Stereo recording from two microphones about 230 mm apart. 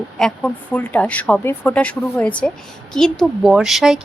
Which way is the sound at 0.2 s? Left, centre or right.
Centre.